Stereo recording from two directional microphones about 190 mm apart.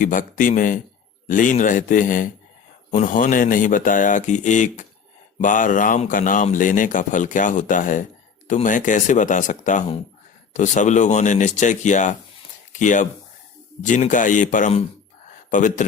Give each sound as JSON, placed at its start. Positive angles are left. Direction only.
{"t": 0.0, "sound": "speech", "side_deg": 45}